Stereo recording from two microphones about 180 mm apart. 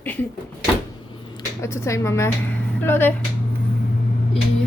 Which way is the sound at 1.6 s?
15° left (ahead or behind).